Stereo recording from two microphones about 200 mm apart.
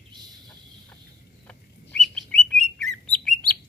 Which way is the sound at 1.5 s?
5° left (ahead or behind).